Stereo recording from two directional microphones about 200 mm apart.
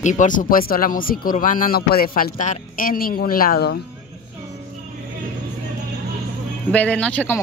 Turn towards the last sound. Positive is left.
turn(degrees=5)  # may be behind; listen again after turning